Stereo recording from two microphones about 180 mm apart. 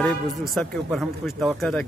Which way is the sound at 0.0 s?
Centre (ahead or behind).